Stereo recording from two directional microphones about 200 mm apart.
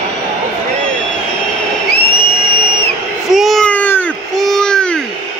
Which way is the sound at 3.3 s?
Centre (ahead or behind).